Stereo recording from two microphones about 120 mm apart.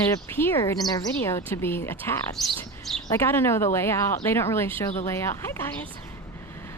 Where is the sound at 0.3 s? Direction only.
20° left (ahead or behind).